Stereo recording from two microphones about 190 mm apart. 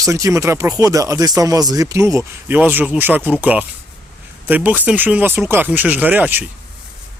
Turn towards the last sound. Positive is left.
turn(degrees=-10)  # may be behind; listen again after turning